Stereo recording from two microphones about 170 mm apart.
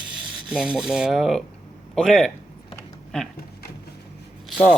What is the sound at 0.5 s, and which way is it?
Speech, 5° right (ahead or behind).